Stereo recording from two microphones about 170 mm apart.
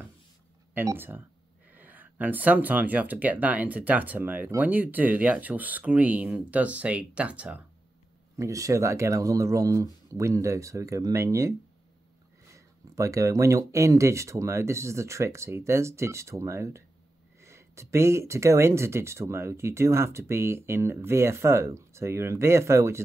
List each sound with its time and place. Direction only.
0.7 s speech: 10° right (ahead or behind)
8.4 s speech: 20° right (ahead or behind)
12.5 s speech: 20° right (ahead or behind)